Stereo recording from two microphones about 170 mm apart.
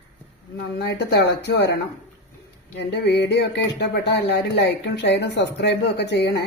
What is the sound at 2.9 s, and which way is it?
Speech, 90° left.